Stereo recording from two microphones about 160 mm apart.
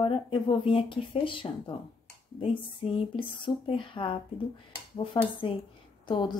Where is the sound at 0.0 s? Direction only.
30° left (ahead or behind).